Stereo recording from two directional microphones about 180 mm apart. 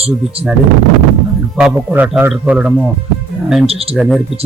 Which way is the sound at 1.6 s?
5° right (ahead or behind).